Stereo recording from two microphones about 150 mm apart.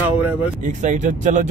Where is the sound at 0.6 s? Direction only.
55° right (ahead or behind).